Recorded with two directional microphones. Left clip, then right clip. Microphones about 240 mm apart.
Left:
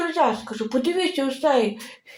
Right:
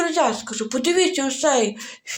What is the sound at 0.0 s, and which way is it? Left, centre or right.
Speech, right.